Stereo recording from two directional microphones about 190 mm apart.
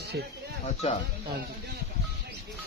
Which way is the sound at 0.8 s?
35° left (ahead or behind).